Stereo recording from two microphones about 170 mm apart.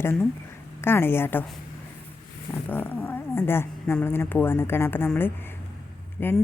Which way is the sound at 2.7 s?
10° left (ahead or behind).